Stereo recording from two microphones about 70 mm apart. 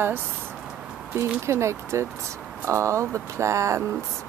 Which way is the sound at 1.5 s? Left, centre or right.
Right.